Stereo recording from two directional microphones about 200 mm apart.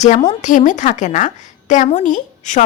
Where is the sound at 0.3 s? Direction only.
40° left (ahead or behind).